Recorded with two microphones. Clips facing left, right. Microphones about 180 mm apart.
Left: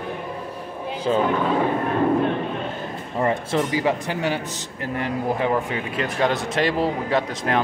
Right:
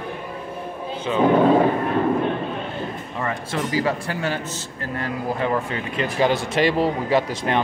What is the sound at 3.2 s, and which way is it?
A man's voice, 20° left (ahead or behind).